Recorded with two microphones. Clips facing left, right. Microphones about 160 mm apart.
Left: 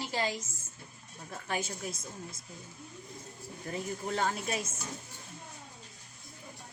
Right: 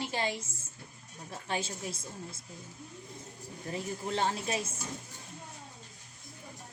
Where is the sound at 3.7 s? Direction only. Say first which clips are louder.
Even; 30° right (ahead or behind).